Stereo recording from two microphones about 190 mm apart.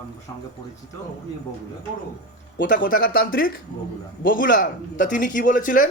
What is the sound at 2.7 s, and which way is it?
A man's voice, 45° left (ahead or behind).